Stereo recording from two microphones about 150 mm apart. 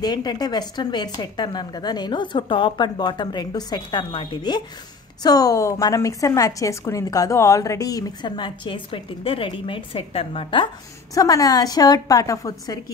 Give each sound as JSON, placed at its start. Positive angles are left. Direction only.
{"t": 0.0, "sound": "a woman's voice", "side_deg": 25}
{"t": 11.1, "sound": "a woman's voice", "side_deg": 25}